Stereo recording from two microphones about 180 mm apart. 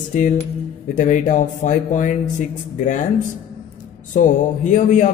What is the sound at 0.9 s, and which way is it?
Speech, 45° left (ahead or behind).